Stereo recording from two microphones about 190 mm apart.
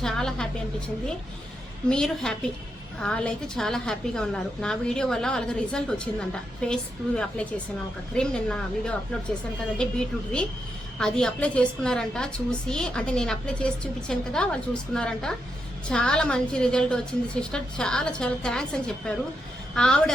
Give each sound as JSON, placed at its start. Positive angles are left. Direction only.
{"t": 0.0, "sound": "a woman's voice", "side_deg": 5}
{"t": 1.9, "sound": "a woman's voice", "side_deg": 5}